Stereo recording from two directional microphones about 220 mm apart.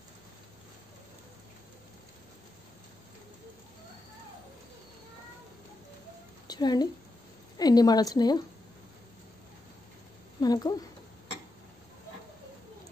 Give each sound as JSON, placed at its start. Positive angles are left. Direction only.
{"t": 6.4, "sound": "a woman's voice", "side_deg": 20}
{"t": 10.4, "sound": "speech", "side_deg": 15}